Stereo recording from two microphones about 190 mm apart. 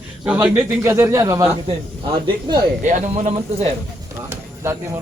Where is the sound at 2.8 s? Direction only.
35° right (ahead or behind).